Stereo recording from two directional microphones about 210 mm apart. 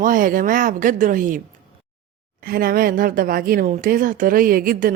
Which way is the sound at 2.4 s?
45° right (ahead or behind).